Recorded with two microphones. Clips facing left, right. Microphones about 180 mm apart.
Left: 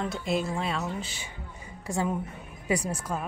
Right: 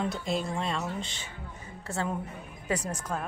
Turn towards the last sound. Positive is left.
turn(degrees=10)  # may be behind; listen again after turning